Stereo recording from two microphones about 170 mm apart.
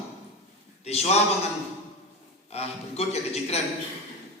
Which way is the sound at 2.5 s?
40° left (ahead or behind).